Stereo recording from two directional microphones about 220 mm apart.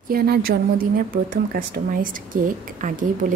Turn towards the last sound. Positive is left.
turn(degrees=-35)  # may be behind; listen again after turning